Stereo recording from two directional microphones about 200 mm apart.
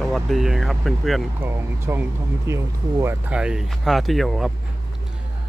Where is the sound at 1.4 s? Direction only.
10° right (ahead or behind).